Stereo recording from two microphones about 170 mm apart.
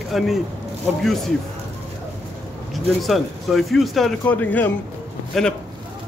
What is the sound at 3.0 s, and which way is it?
Speech, centre (ahead or behind).